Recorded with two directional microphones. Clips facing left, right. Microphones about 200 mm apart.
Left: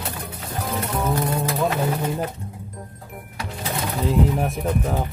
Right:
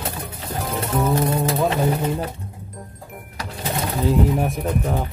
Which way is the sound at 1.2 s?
25° right (ahead or behind).